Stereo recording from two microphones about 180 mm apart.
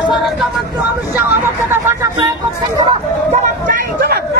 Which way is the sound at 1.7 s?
15° right (ahead or behind).